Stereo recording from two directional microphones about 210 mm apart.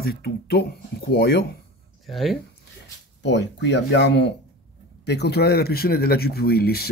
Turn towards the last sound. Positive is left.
turn(degrees=50)  # may be behind; listen again after turning